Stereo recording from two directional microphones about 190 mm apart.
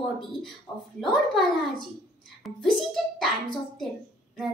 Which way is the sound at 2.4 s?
Centre (ahead or behind).